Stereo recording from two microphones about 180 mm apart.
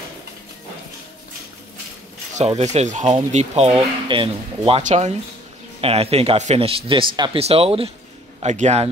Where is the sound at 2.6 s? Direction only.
40° right (ahead or behind).